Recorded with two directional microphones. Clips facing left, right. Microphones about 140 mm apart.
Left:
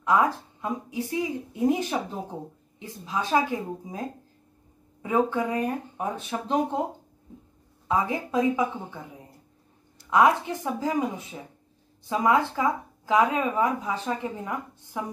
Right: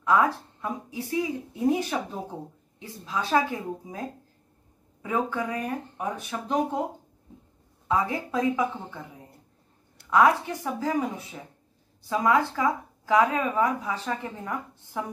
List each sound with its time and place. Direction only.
0.0 s speech: 15° left (ahead or behind)
5.0 s speech: 20° left (ahead or behind)
7.9 s speech: 20° left (ahead or behind)
10.0 s speech: 20° left (ahead or behind)